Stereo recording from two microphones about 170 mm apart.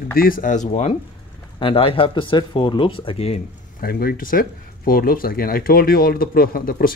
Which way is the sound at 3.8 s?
60° left (ahead or behind).